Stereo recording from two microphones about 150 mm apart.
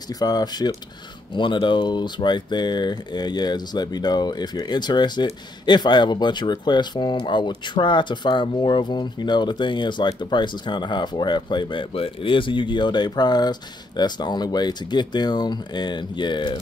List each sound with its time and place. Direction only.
0.1 s speech: 25° left (ahead or behind)